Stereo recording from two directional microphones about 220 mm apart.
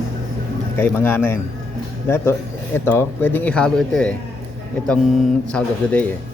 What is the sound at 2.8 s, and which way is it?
Speech, 10° left (ahead or behind).